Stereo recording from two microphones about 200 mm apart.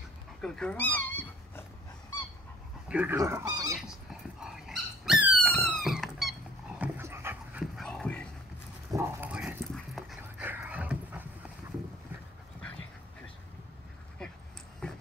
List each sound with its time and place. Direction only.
0.4 s dog: 5° left (ahead or behind)
2.9 s speech: 5° right (ahead or behind)
3.2 s speech: 15° right (ahead or behind)
4.4 s dog: centre (ahead or behind)
6.8 s dog: 10° right (ahead or behind)
7.6 s music: centre (ahead or behind)
8.9 s dog: 5° right (ahead or behind)
14.8 s dog: 5° left (ahead or behind)